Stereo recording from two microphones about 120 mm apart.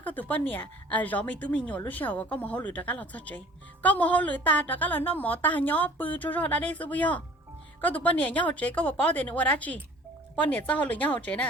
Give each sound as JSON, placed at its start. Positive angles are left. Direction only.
{"t": 0.0, "sound": "a woman's voice", "side_deg": 15}